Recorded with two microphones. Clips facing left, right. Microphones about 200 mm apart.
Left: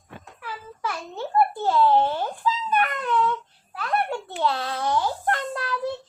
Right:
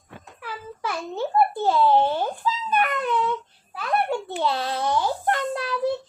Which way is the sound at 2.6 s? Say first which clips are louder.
Right 3 dB; 20° right (ahead or behind).